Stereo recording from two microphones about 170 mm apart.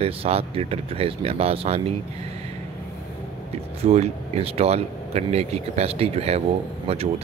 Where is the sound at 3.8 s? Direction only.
40° right (ahead or behind).